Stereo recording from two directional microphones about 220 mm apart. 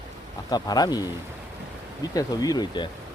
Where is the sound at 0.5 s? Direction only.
15° left (ahead or behind).